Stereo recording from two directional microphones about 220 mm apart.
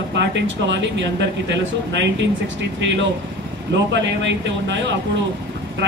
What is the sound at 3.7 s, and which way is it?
Speech, 55° right (ahead or behind).